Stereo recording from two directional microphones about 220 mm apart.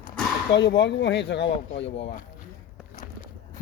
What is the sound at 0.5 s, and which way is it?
Speech, 55° left (ahead or behind).